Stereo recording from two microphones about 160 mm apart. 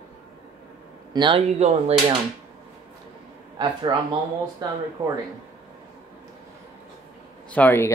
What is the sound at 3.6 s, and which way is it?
Speech, 30° right (ahead or behind).